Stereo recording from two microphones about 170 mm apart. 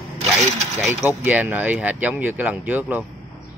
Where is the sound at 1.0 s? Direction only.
10° right (ahead or behind).